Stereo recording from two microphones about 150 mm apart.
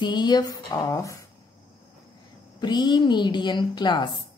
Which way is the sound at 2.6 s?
30° left (ahead or behind).